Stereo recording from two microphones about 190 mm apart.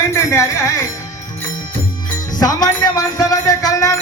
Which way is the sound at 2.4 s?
20° left (ahead or behind).